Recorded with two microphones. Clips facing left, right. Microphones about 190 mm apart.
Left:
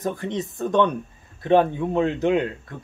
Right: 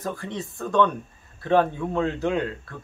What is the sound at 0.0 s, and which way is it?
Speech, 20° left (ahead or behind).